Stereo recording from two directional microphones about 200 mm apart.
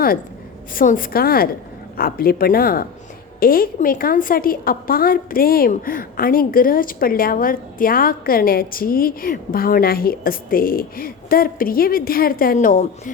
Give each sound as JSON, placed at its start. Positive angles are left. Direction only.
{"t": 0.7, "sound": "a woman's voice", "side_deg": 45}